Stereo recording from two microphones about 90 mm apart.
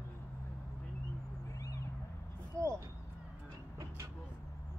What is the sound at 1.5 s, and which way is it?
Cat, 35° left (ahead or behind).